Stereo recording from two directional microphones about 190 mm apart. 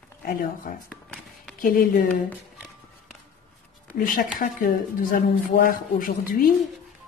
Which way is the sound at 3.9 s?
45° left (ahead or behind).